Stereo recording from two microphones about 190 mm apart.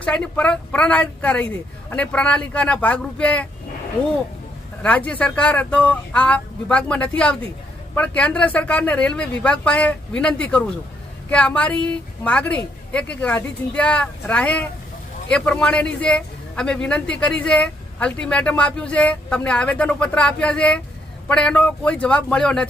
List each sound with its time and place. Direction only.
0.0 s speech: 5° left (ahead or behind)
4.8 s a man's voice: 5° left (ahead or behind)